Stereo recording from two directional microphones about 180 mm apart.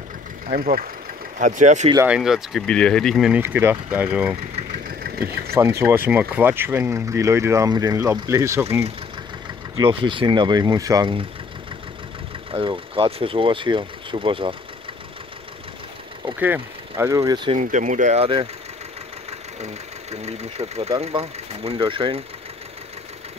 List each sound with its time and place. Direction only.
0.5 s speech: 50° right (ahead or behind)
2.0 s speech: 5° right (ahead or behind)
5.0 s vehicle: 55° right (ahead or behind)
5.5 s speech: 15° right (ahead or behind)
9.8 s speech: 30° right (ahead or behind)
12.4 s speech: 30° right (ahead or behind)
16.3 s speech: 10° right (ahead or behind)
17.6 s speech: 45° right (ahead or behind)
19.6 s speech: 35° right (ahead or behind)